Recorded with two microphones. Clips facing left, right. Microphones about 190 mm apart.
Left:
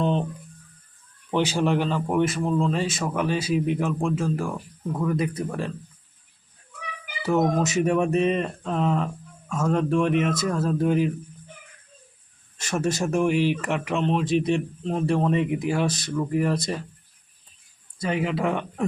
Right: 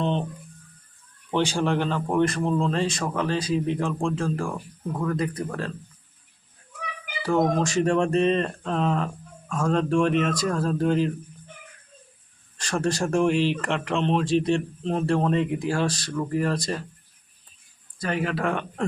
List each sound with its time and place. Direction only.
0.0 s a man's voice: 5° left (ahead or behind)
1.3 s a man's voice: 5° left (ahead or behind)
7.3 s a man's voice: 5° left (ahead or behind)
12.6 s a man's voice: 5° left (ahead or behind)
18.0 s a man's voice: 15° left (ahead or behind)